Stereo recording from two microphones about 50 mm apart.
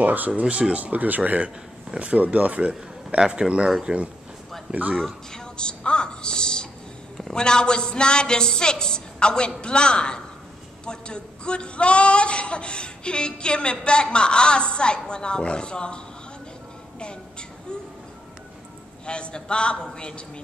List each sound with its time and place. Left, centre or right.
0.0 s speech: right
0.4 s speech: right
0.9 s speech: right
3.2 s speech: centre
5.0 s music: centre
7.3 s a man's voice: centre
17.0 s music: centre
19.0 s speech: centre